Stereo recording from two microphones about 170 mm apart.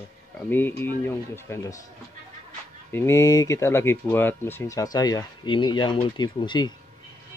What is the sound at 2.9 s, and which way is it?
Speech, 15° left (ahead or behind).